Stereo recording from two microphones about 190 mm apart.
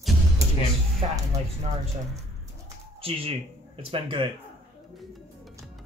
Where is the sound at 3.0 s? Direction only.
30° right (ahead or behind).